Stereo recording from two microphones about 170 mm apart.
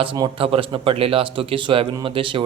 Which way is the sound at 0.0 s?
30° right (ahead or behind).